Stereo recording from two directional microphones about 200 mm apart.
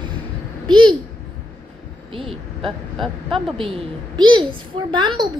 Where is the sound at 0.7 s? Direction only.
25° right (ahead or behind).